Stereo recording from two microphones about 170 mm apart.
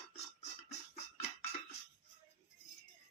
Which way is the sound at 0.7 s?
40° left (ahead or behind).